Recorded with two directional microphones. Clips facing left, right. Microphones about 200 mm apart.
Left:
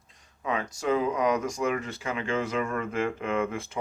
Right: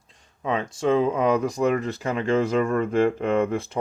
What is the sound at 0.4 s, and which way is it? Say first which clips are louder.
Speech: right 5 dB; 30° right (ahead or behind).